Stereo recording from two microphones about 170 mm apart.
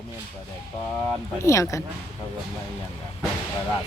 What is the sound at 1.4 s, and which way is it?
Speech, 15° left (ahead or behind).